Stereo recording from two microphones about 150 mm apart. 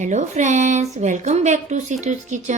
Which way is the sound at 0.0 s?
50° right (ahead or behind).